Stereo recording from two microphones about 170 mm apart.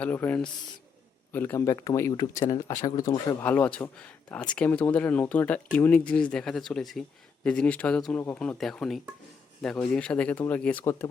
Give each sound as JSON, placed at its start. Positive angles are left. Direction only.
{"t": 0.0, "sound": "speech", "side_deg": 10}
{"t": 3.4, "sound": "speech", "side_deg": 10}